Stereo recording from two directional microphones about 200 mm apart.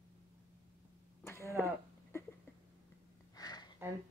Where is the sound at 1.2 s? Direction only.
15° left (ahead or behind).